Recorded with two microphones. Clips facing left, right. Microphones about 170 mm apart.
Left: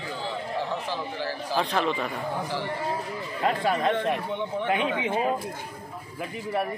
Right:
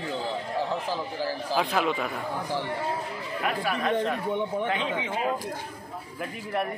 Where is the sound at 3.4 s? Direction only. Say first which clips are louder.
Left 4 dB; 25° left (ahead or behind).